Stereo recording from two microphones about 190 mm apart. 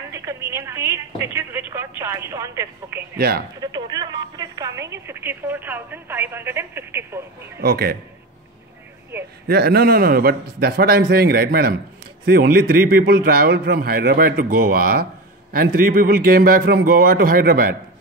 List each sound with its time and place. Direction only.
0.1 s speech: 15° right (ahead or behind)
3.2 s speech: 55° right (ahead or behind)
3.6 s speech: 20° right (ahead or behind)
7.6 s a man's voice: 55° right (ahead or behind)
9.1 s speech: 10° right (ahead or behind)
9.5 s a man's voice: 55° right (ahead or behind)